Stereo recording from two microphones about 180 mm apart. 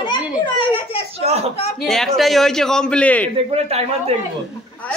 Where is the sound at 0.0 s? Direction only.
25° left (ahead or behind).